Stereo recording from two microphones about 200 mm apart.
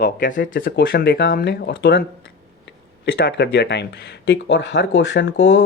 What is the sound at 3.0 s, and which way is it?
Speech, 55° left (ahead or behind).